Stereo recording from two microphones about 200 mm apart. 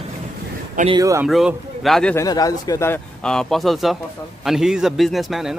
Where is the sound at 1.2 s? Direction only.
Centre (ahead or behind).